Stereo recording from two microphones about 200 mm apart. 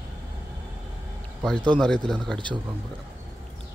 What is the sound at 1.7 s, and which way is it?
Speech, 5° left (ahead or behind).